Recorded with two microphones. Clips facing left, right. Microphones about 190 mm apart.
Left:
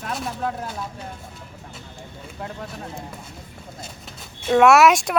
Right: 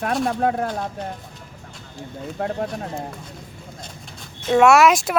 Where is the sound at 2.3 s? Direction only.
50° right (ahead or behind).